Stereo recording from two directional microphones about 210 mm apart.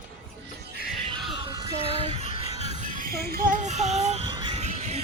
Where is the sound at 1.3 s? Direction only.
20° right (ahead or behind).